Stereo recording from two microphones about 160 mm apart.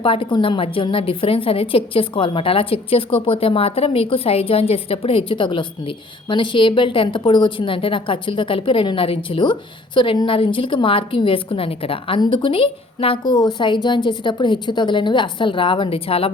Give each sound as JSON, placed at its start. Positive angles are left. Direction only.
{"t": 0.0, "sound": "a woman's voice", "side_deg": 35}